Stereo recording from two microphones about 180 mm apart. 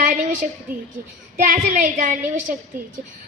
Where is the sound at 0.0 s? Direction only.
45° right (ahead or behind).